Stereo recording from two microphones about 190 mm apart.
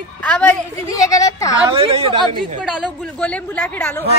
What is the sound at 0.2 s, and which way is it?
Speech, 5° left (ahead or behind).